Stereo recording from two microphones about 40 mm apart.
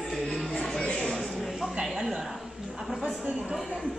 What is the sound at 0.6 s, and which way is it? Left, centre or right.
Music, left.